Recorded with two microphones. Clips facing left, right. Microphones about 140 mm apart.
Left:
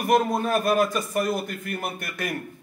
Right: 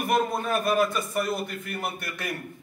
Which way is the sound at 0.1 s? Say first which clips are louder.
Left 4 dB; 40° left (ahead or behind).